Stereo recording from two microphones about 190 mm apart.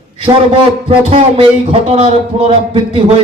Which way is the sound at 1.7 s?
30° right (ahead or behind).